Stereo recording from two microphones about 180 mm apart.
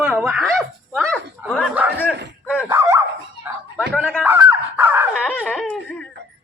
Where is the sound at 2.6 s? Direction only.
15° right (ahead or behind).